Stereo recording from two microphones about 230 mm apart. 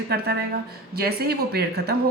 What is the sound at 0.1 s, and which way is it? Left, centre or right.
Speech, right.